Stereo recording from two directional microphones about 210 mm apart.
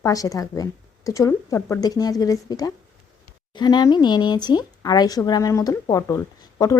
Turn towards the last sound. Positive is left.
turn(degrees=15)  # may be behind; listen again after turning